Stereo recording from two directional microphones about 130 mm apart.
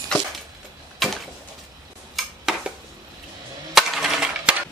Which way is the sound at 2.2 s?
5° right (ahead or behind).